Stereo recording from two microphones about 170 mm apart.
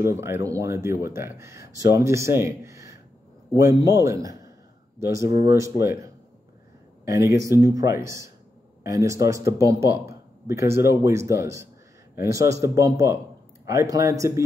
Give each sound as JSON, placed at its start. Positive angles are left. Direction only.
{"t": 0.0, "sound": "a man's voice", "side_deg": -15}